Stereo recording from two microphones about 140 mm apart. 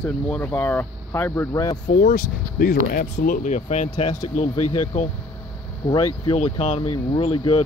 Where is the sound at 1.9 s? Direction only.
75° left (ahead or behind); by 4.5 s 50° left (ahead or behind).